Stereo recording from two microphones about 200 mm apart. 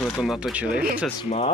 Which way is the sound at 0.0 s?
Centre (ahead or behind).